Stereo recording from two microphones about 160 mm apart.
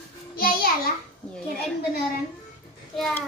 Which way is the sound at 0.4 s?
65° left (ahead or behind).